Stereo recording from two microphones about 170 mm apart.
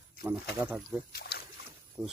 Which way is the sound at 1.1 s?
70° left (ahead or behind).